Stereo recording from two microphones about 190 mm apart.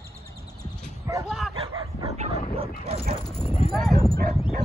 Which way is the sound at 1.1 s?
15° right (ahead or behind).